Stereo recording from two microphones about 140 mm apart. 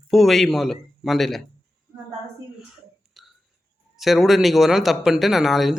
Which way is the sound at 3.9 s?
Centre (ahead or behind).